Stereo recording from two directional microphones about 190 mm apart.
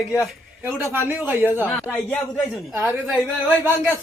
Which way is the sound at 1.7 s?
Centre (ahead or behind).